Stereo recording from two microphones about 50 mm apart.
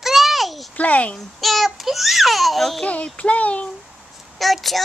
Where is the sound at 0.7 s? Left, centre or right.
Left.